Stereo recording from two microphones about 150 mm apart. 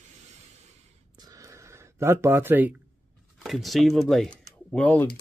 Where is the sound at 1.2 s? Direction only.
25° right (ahead or behind).